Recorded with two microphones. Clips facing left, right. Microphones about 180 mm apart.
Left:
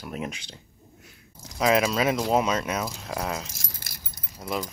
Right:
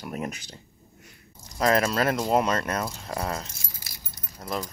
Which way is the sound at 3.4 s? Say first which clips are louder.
Left 2 dB; 80° left.